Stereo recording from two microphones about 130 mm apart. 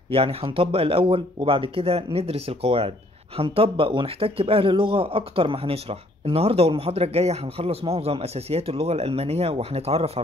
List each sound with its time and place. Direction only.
0.1 s speech: 50° right (ahead or behind)